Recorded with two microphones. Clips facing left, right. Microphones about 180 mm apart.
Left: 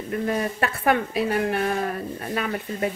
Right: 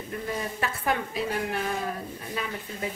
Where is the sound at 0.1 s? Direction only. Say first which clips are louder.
Left 8 dB; 65° left (ahead or behind).